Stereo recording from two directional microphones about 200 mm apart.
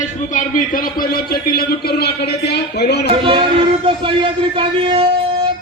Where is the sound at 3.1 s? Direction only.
25° right (ahead or behind).